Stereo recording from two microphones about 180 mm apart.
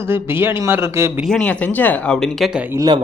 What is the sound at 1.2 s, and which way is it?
Speech, 5° left (ahead or behind).